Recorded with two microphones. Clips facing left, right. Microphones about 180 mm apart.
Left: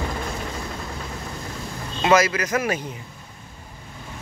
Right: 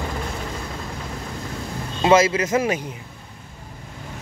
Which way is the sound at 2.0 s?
25° right (ahead or behind).